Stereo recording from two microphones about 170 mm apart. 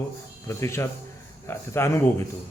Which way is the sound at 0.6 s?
15° left (ahead or behind).